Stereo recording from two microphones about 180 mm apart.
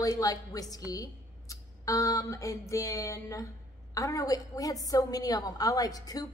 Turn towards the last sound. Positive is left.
turn(degrees=20)  # may be behind; listen again after turning